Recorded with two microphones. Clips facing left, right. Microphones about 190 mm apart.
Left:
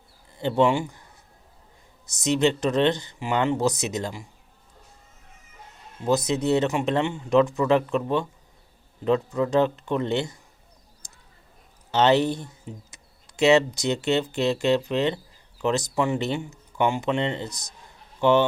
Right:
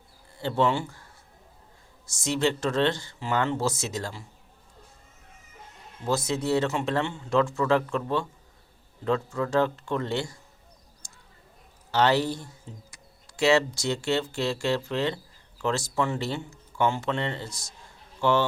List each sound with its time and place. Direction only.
0.3 s speech: 20° left (ahead or behind)
2.0 s speech: 20° left (ahead or behind)
6.1 s speech: 20° left (ahead or behind)
11.0 s mouse: 20° left (ahead or behind)
11.9 s a man's voice: 20° left (ahead or behind)